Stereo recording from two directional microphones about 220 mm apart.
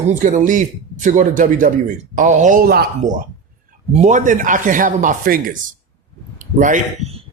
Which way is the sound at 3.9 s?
35° right (ahead or behind).